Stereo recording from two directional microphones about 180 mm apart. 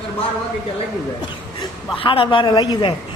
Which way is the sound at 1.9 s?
30° left (ahead or behind).